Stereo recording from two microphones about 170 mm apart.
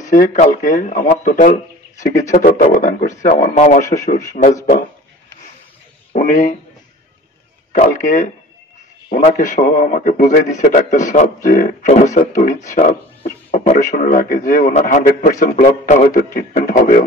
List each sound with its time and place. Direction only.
0.1 s a man's voice: 50° left (ahead or behind)
2.6 s a man's voice: 50° left (ahead or behind)
6.1 s a man's voice: 55° left (ahead or behind)
7.7 s a man's voice: 50° left (ahead or behind)
15.0 s a man's voice: 55° left (ahead or behind)